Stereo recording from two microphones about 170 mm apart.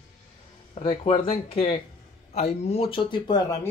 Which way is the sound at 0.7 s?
30° left (ahead or behind).